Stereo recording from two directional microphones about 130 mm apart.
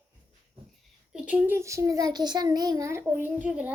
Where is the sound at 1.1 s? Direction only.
15° right (ahead or behind).